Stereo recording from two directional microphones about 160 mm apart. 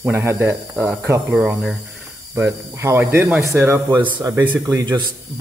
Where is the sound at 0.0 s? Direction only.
15° right (ahead or behind).